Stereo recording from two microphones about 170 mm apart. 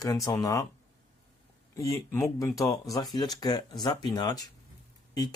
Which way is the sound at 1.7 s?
20° left (ahead or behind).